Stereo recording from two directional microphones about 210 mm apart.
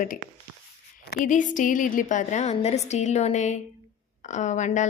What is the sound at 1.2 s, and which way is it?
Speech, 35° left (ahead or behind).